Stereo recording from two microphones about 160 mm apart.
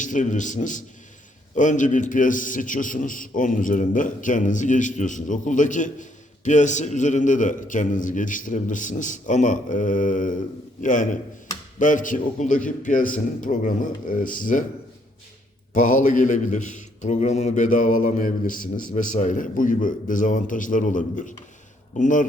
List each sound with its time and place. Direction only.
0.0 s a man's voice: 50° left (ahead or behind)
15.7 s a man's voice: 55° left (ahead or behind)